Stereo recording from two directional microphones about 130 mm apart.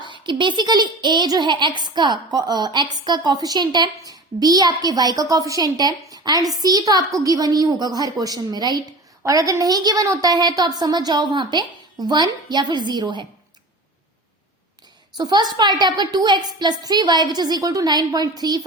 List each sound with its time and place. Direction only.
0.0 s a woman's voice: 35° right (ahead or behind)
15.2 s speech: 35° right (ahead or behind)